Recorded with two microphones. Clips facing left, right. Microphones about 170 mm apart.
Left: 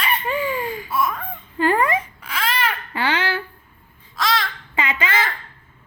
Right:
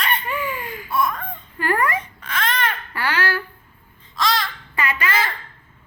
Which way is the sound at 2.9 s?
20° left (ahead or behind).